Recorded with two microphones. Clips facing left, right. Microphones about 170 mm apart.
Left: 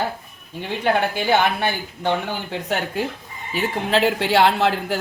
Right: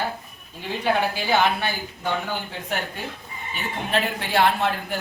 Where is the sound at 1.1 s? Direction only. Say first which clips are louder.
Left 2 dB; 60° left (ahead or behind).